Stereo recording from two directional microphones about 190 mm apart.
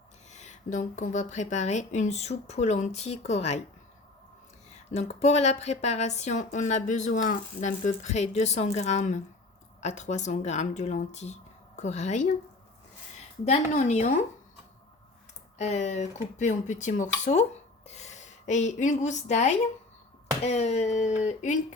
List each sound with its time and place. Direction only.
0.3 s speech: 40° left (ahead or behind)
4.9 s speech: 35° left (ahead or behind)
13.4 s speech: 35° left (ahead or behind)
15.5 s a woman's voice: 35° left (ahead or behind)